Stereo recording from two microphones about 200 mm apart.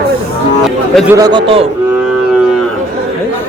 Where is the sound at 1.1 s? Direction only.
20° right (ahead or behind).